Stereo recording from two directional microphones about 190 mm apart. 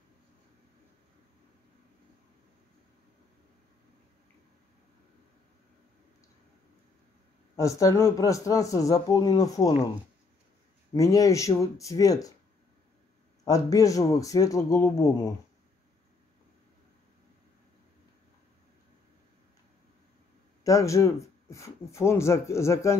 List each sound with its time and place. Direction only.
7.5 s speech: 15° left (ahead or behind)
10.9 s speech: 20° left (ahead or behind)
13.4 s speech: 20° left (ahead or behind)
20.6 s speech: 15° left (ahead or behind)